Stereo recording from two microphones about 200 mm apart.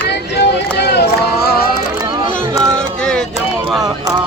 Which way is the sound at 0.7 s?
55° left (ahead or behind).